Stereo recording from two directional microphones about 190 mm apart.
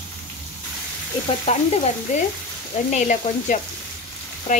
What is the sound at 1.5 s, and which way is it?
Speech, 30° left (ahead or behind).